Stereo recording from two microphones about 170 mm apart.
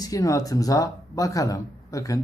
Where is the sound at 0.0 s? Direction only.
20° left (ahead or behind).